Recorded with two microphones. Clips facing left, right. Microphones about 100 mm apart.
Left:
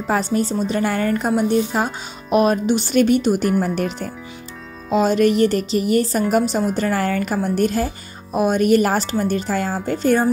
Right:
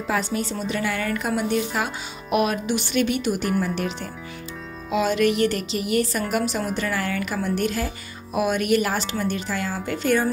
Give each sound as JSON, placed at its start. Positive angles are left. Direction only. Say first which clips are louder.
{"t": 0.0, "sound": "a woman's voice", "louder": "left 5 dB", "side_deg": 40}